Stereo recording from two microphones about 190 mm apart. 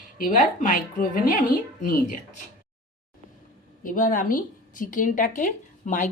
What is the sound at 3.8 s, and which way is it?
Speech, 45° left (ahead or behind).